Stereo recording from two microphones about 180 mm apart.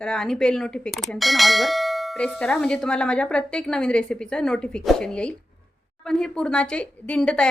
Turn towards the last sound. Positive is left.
turn(degrees=5)  # may be behind; listen again after turning